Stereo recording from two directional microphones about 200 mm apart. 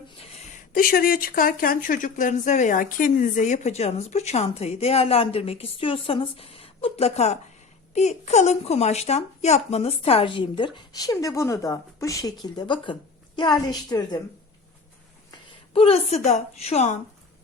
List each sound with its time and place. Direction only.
0.5 s speech: 45° left (ahead or behind); by 14.2 s 20° left (ahead or behind)
15.7 s speech: 30° left (ahead or behind)